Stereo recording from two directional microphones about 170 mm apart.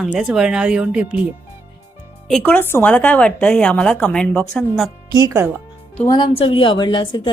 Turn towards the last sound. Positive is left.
turn(degrees=30)  # may be behind; listen again after turning